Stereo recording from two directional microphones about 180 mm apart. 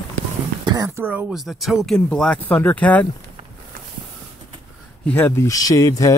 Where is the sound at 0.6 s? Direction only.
20° right (ahead or behind).